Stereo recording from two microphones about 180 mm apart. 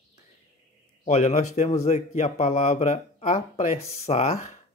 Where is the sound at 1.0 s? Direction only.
40° left (ahead or behind).